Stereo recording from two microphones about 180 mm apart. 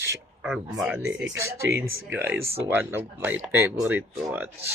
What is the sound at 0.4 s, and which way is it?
Speech, 5° right (ahead or behind).